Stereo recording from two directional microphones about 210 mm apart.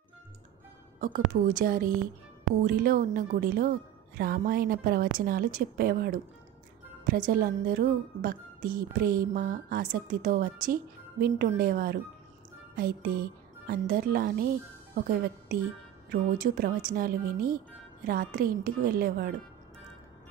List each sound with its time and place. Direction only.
1.0 s a woman's voice: 40° right (ahead or behind)